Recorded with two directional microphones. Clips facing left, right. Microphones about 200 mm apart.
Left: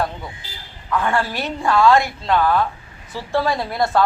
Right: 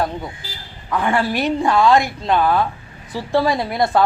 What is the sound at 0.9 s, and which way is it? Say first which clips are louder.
Speech: right 2 dB; 15° right (ahead or behind).